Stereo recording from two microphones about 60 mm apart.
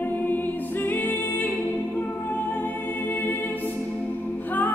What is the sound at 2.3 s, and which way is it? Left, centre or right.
Music, left.